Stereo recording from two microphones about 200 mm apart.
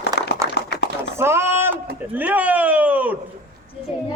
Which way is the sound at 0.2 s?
55° left (ahead or behind).